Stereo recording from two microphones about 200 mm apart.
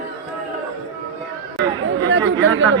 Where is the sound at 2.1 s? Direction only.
65° right (ahead or behind).